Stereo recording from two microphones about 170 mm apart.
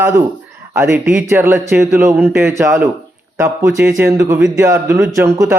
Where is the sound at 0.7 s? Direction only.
15° right (ahead or behind).